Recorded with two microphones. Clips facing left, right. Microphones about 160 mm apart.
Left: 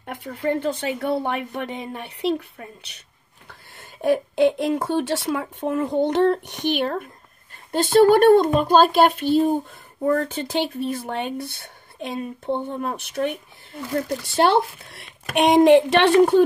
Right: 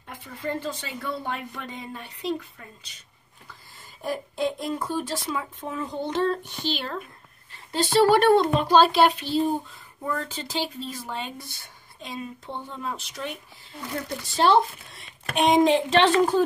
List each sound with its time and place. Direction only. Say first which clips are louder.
0.0 s speech: left 7 dB; 70° left (ahead or behind)
6.7 s speech: left 8 dB; 55° left (ahead or behind)